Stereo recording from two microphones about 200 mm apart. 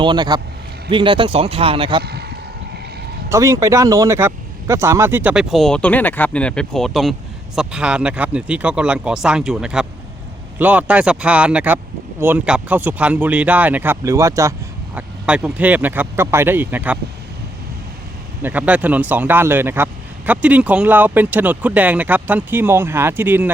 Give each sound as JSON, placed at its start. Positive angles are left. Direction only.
{"t": 0.0, "sound": "a man's voice", "side_deg": -20}
{"t": 2.0, "sound": "vehicle", "side_deg": -55}
{"t": 3.2, "sound": "speech", "side_deg": -15}
{"t": 14.9, "sound": "speech", "side_deg": -5}
{"t": 18.4, "sound": "speech", "side_deg": -5}